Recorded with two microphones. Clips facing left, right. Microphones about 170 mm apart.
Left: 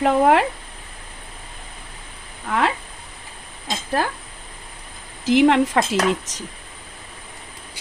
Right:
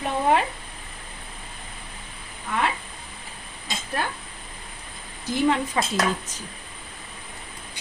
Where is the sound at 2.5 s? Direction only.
90° left.